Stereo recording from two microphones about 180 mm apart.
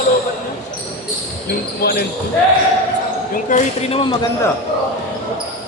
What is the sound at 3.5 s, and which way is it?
Speech, 30° left (ahead or behind).